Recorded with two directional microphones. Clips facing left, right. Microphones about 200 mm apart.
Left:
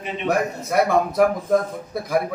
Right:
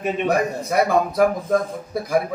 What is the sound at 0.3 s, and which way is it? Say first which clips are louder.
A man's voice: left 2 dB; centre (ahead or behind).